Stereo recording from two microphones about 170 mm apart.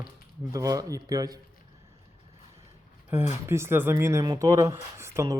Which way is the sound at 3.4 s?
15° right (ahead or behind).